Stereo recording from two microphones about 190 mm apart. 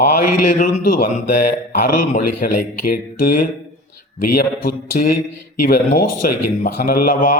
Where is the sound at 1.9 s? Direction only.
45° left (ahead or behind).